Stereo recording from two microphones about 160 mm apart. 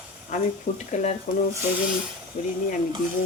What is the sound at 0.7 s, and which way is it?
Speech, 75° left (ahead or behind).